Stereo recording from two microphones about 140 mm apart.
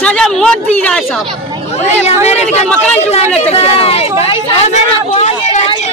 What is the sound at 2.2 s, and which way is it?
A woman's voice, 50° left (ahead or behind).